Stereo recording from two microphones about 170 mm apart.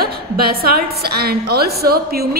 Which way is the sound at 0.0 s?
65° right (ahead or behind).